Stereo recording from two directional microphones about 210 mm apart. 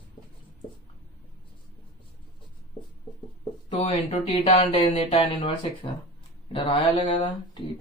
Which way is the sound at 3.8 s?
25° left (ahead or behind).